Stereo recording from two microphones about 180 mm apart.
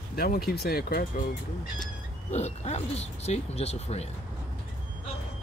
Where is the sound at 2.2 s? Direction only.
35° left (ahead or behind).